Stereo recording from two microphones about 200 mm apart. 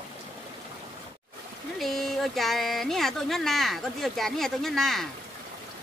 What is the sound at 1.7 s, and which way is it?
Speech, centre (ahead or behind).